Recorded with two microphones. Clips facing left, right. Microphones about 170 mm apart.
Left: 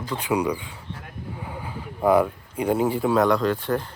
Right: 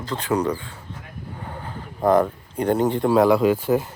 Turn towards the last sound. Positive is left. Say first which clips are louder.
# right 5 dB
turn(degrees=-5)  # may be behind; listen again after turning